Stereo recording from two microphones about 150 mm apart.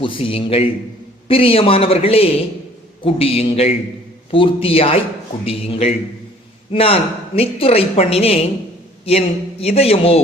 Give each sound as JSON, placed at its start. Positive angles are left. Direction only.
{"t": 0.0, "sound": "a woman's voice", "side_deg": 35}